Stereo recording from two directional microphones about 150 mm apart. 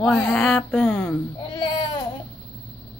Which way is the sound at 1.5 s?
30° left (ahead or behind).